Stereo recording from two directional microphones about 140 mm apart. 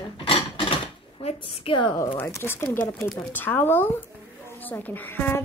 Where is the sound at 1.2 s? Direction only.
40° left (ahead or behind).